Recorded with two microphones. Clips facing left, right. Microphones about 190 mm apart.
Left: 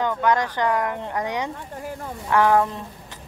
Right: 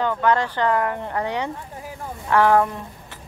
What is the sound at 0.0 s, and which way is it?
Speech, 15° left (ahead or behind).